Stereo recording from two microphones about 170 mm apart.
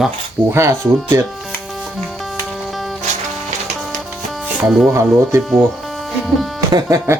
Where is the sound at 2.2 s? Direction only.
Centre (ahead or behind).